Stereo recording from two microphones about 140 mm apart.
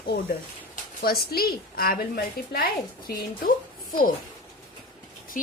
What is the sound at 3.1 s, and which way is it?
Speech, 90° left.